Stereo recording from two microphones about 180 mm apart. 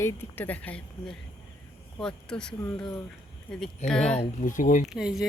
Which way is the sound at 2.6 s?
20° left (ahead or behind).